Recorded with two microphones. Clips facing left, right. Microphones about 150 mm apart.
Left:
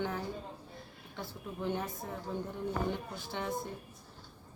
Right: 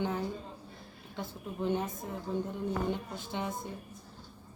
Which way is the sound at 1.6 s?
20° right (ahead or behind).